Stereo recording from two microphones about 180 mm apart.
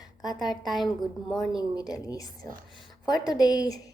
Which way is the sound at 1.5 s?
20° left (ahead or behind).